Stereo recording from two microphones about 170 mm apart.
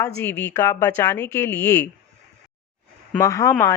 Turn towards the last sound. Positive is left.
turn(degrees=10)  # may be behind; listen again after turning